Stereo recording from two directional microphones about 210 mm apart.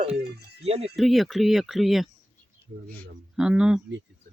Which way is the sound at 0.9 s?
Centre (ahead or behind).